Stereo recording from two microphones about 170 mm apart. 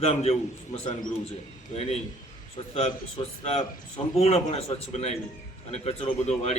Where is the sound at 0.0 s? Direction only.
35° left (ahead or behind).